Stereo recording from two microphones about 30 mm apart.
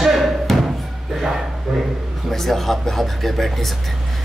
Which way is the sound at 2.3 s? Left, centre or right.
Centre.